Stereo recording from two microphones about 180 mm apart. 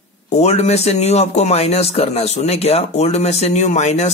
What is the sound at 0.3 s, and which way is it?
Speech, 40° left (ahead or behind).